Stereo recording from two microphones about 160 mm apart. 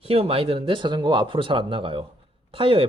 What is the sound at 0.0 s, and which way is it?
Speech, 35° right (ahead or behind).